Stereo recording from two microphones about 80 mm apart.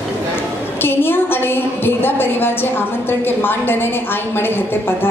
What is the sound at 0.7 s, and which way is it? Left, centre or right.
A woman's voice, left.